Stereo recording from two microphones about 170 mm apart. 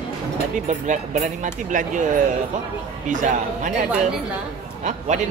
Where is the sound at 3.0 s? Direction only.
50° right (ahead or behind).